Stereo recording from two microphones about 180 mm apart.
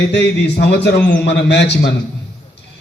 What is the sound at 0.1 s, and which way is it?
Speech, 70° left (ahead or behind).